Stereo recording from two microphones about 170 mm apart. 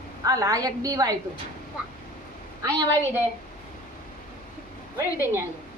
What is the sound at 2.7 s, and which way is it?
Speech, 25° right (ahead or behind).